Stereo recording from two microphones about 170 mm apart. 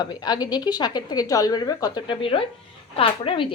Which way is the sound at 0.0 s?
25° left (ahead or behind).